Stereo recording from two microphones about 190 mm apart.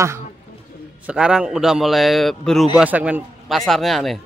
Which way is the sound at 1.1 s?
5° right (ahead or behind).